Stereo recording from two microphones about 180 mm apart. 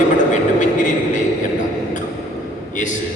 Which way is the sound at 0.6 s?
45° left (ahead or behind).